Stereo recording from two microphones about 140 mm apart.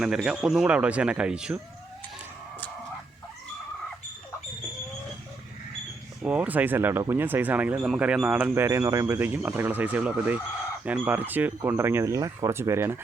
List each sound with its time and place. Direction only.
0.0 s speech: 5° right (ahead or behind)
6.2 s speech: 10° right (ahead or behind)